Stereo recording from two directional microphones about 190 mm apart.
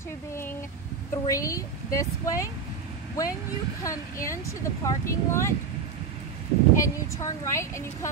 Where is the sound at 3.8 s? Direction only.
15° left (ahead or behind).